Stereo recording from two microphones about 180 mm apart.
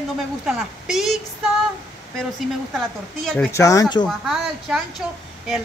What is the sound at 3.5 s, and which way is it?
Speech, 15° left (ahead or behind).